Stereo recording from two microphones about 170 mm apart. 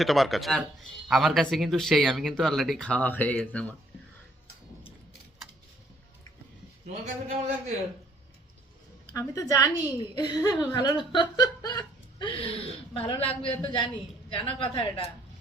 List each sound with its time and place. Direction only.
0.0 s speech: centre (ahead or behind)
6.8 s a man's voice: 40° right (ahead or behind)
9.1 s a woman's voice: 20° left (ahead or behind)